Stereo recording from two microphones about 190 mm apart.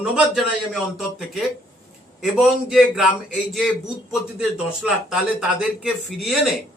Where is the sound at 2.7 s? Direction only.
5° right (ahead or behind).